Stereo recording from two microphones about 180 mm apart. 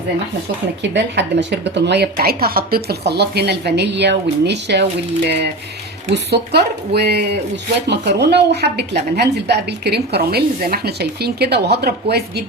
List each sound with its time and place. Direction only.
0.8 s a woman's voice: 75° right (ahead or behind); by 3.0 s 55° right (ahead or behind)
3.1 s a woman's voice: 65° right (ahead or behind)
6.3 s a woman's voice: 65° right (ahead or behind)